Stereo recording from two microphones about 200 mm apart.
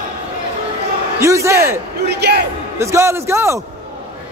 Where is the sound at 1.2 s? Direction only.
15° right (ahead or behind).